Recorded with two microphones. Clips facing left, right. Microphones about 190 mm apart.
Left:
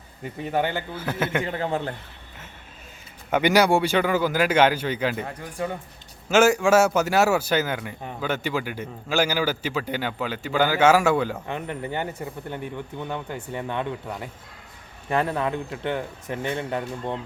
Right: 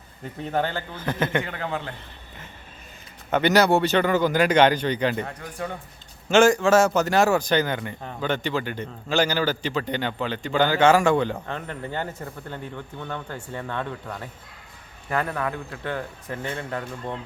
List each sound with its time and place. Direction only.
0.4 s a man's voice: 10° left (ahead or behind)
1.5 s a man's voice: 30° left (ahead or behind)
3.2 s a man's voice: 10° left (ahead or behind)